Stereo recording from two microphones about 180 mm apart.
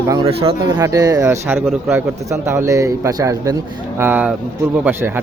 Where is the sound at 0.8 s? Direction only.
20° right (ahead or behind).